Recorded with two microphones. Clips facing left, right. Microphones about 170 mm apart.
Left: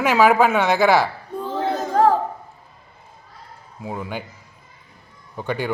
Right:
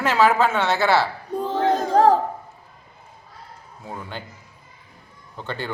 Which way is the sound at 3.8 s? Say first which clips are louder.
Left 5 dB; 15° left (ahead or behind).